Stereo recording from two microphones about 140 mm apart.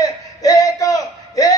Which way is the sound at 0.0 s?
25° left (ahead or behind).